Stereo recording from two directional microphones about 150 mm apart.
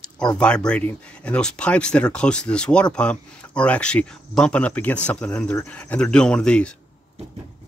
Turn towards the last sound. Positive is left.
turn(degrees=5)  # may be behind; listen again after turning